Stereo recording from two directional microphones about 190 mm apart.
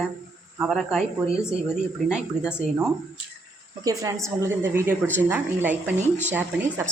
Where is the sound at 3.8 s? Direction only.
20° right (ahead or behind).